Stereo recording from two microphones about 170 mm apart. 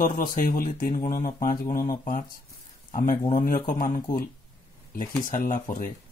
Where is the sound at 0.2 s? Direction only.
55° left (ahead or behind).